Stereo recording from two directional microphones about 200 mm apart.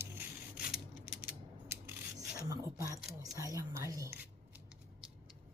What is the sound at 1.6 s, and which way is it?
Scissors, 15° right (ahead or behind).